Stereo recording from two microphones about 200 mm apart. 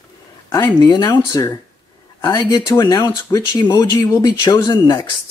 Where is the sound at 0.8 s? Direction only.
20° left (ahead or behind).